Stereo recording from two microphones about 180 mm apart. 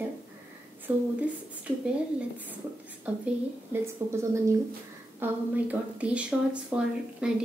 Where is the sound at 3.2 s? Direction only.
15° right (ahead or behind).